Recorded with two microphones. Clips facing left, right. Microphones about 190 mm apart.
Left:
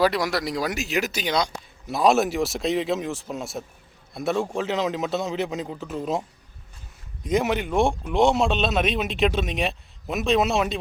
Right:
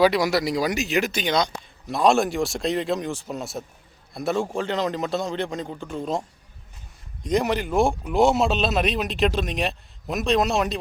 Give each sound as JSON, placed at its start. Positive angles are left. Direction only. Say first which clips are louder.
{"t": 0.0, "sound": "speech", "louder": "right 3 dB", "side_deg": 0}
{"t": 7.3, "sound": "speech", "louder": "even", "side_deg": 0}